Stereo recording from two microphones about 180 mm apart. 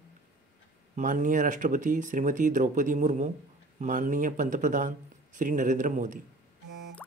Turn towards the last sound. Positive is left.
turn(degrees=-45)  # may be behind; listen again after turning